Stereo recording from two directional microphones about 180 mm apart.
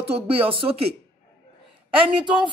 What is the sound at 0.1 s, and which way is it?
Speech, 30° right (ahead or behind).